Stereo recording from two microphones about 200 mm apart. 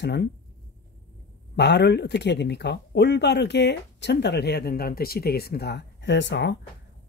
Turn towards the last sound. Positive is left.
turn(degrees=60)  # may be behind; listen again after turning